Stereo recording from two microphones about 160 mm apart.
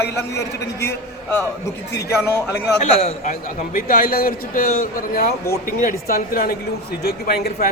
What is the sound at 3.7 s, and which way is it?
A man's voice, 60° left (ahead or behind).